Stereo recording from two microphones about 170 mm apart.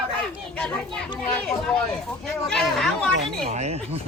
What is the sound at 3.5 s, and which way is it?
Speech, 40° right (ahead or behind).